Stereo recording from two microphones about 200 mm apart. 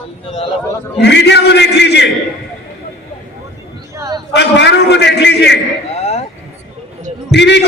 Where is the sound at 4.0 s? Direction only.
15° right (ahead or behind).